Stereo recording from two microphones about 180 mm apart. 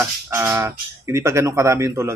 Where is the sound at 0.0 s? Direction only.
10° right (ahead or behind).